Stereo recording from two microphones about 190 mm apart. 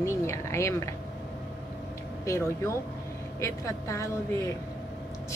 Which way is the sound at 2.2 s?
15° left (ahead or behind).